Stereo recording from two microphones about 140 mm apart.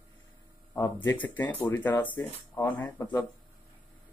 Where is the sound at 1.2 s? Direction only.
10° left (ahead or behind).